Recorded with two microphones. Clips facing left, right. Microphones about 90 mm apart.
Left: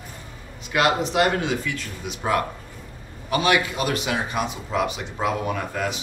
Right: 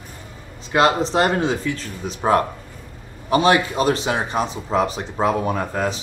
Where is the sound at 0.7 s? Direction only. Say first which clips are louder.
Right 3 dB; 30° right (ahead or behind).